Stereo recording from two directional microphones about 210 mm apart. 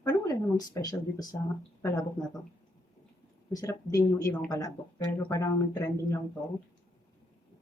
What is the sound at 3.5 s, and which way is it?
Speech, 15° left (ahead or behind).